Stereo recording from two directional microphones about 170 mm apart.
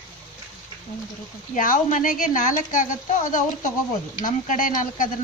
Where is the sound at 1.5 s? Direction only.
50° left (ahead or behind).